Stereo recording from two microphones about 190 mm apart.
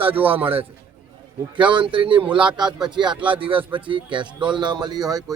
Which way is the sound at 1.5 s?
25° right (ahead or behind).